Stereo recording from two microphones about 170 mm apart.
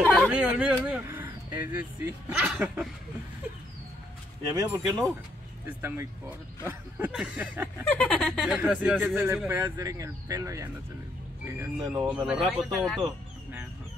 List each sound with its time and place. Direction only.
0.0 s a sound: 10° left (ahead or behind)
0.3 s speech: 10° right (ahead or behind)
0.8 s a sound: 10° right (ahead or behind)
1.6 s speech: 10° right (ahead or behind)
4.5 s speech: 20° right (ahead or behind)
7.9 s speech: 10° left (ahead or behind)
8.5 s speech: 5° right (ahead or behind); by 12.2 s 20° right (ahead or behind)
12.3 s speech: centre (ahead or behind)